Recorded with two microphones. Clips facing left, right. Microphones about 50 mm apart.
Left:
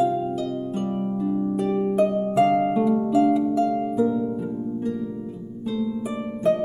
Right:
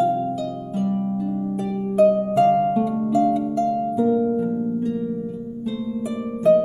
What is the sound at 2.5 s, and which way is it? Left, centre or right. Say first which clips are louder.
Harp: right 2 dB; left.